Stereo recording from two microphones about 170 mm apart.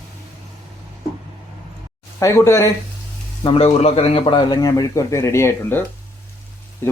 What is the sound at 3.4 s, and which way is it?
A man's voice, 35° left (ahead or behind).